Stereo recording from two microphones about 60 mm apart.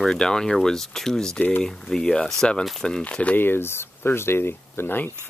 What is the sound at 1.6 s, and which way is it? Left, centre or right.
Speech, centre.